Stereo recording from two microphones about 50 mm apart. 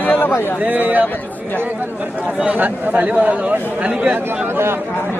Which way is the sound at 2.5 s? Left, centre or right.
Right.